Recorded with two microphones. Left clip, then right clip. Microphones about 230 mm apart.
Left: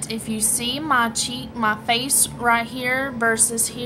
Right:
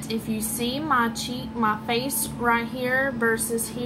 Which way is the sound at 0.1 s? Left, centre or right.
Left.